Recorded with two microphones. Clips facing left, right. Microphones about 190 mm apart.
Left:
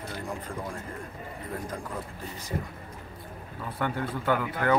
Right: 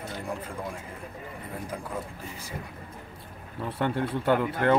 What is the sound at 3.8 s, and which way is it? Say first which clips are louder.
Speech: right 3 dB; 25° right (ahead or behind).